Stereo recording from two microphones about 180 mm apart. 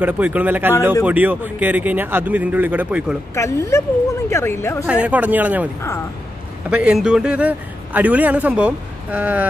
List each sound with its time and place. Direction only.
0.0 s a man's voice: 10° right (ahead or behind)
3.3 s a woman's voice: 15° left (ahead or behind)
4.8 s a man's voice: 5° right (ahead or behind)
6.7 s a man's voice: 5° right (ahead or behind)